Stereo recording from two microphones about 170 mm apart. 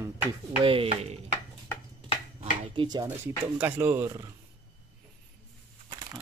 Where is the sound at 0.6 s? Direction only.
35° right (ahead or behind).